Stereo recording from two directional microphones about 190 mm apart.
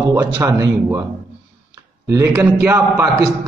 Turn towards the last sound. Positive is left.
turn(degrees=-15)  # may be behind; listen again after turning